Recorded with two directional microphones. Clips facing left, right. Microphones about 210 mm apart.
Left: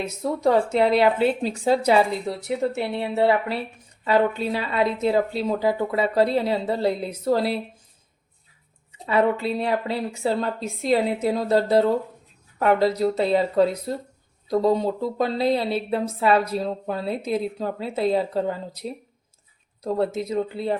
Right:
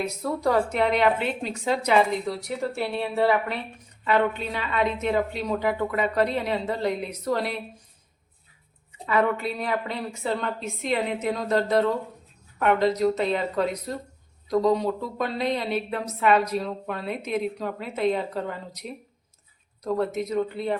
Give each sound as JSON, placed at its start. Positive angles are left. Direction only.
{"t": 0.0, "sound": "a woman's voice", "side_deg": 20}
{"t": 2.6, "sound": "a woman's voice", "side_deg": 20}
{"t": 9.0, "sound": "a woman's voice", "side_deg": 30}